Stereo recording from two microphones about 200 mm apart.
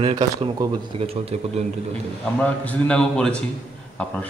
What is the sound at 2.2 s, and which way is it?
A man's voice, 5° left (ahead or behind).